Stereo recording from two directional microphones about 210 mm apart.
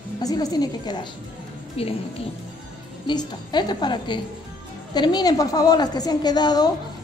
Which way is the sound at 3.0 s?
20° left (ahead or behind).